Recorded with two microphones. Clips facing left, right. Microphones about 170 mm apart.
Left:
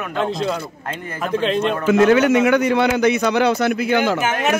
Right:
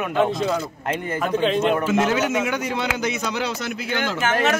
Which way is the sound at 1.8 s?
60° left (ahead or behind).